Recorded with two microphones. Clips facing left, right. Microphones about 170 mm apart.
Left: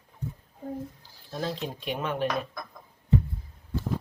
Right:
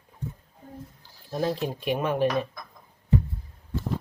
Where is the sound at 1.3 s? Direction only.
15° right (ahead or behind).